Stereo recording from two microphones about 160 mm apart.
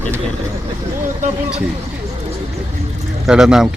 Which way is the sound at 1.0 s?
55° right (ahead or behind).